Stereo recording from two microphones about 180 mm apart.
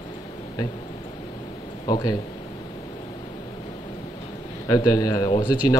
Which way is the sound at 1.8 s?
20° left (ahead or behind).